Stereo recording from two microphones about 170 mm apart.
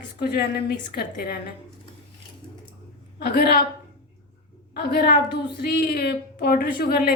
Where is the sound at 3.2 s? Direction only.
70° left (ahead or behind).